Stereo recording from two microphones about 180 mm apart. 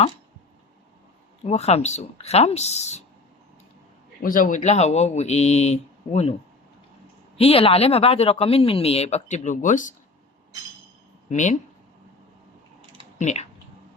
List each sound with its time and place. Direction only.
1.5 s speech: 35° left (ahead or behind)
4.2 s speech: 50° left (ahead or behind)
7.3 s speech: 35° left (ahead or behind)
11.3 s speech: 40° left (ahead or behind)
13.1 s speech: 40° left (ahead or behind)